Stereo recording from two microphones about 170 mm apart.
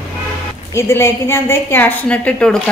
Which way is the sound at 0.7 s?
15° left (ahead or behind).